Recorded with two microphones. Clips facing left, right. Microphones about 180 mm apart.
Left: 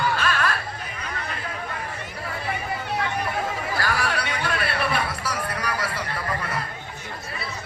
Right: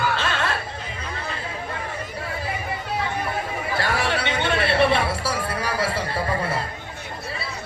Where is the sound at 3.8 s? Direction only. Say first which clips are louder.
Right 3 dB; 25° right (ahead or behind).